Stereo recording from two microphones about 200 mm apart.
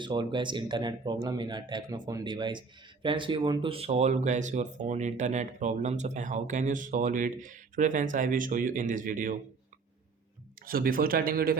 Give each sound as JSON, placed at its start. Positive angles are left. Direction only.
{"t": 0.0, "sound": "speech", "side_deg": -25}
{"t": 10.7, "sound": "speech", "side_deg": -45}